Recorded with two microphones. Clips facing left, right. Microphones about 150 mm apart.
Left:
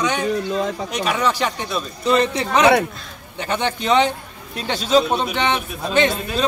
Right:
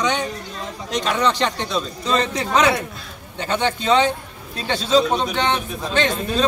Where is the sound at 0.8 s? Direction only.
10° left (ahead or behind).